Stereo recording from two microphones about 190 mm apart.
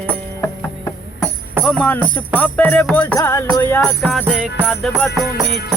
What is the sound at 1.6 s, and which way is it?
Music, 5° left (ahead or behind).